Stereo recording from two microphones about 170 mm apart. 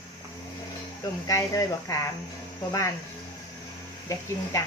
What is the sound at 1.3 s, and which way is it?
Speech, 20° left (ahead or behind).